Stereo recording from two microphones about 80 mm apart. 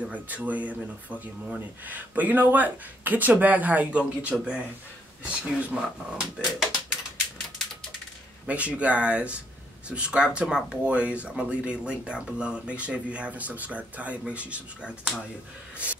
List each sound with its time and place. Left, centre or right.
0.0 s speech: centre
8.5 s speech: centre